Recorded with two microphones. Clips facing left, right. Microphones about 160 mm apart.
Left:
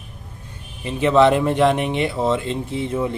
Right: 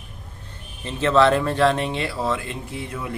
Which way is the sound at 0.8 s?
15° left (ahead or behind).